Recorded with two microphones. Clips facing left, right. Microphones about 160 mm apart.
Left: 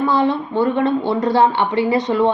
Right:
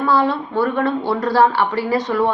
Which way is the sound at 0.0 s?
20° left (ahead or behind).